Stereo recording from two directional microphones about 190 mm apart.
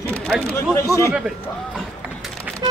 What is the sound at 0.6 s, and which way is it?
Speech, 15° left (ahead or behind).